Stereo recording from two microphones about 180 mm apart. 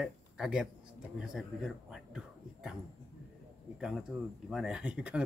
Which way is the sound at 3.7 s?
5° right (ahead or behind).